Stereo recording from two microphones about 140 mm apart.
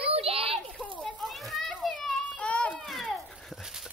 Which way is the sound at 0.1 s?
45° right (ahead or behind).